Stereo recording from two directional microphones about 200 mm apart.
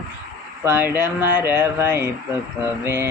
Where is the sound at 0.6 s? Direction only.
10° right (ahead or behind).